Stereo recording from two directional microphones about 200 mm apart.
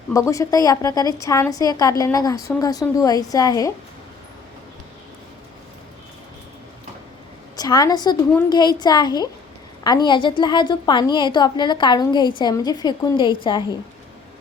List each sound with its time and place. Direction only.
0.1 s a woman's voice: 15° left (ahead or behind)
7.5 s a woman's voice: 20° left (ahead or behind)